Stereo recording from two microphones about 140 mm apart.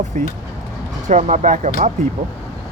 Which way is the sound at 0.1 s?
70° right (ahead or behind).